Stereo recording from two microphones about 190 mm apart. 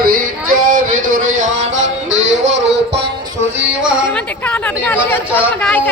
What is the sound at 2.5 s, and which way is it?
Music, 65° right (ahead or behind).